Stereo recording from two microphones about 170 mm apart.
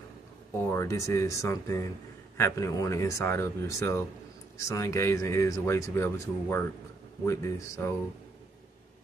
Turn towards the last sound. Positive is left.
turn(degrees=15)  # may be behind; listen again after turning